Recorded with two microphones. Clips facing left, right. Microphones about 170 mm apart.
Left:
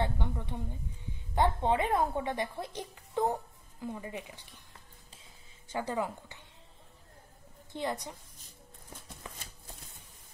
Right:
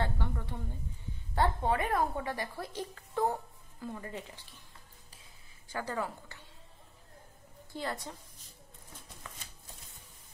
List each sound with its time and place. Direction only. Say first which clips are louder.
0.0 s a woman's voice: left 2 dB; 20° left (ahead or behind)
5.7 s a woman's voice: left 3 dB; 20° left (ahead or behind)
7.7 s a woman's voice: left 3 dB; 20° left (ahead or behind)